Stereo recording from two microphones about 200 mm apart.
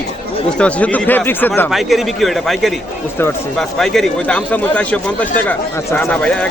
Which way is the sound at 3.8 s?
Centre (ahead or behind).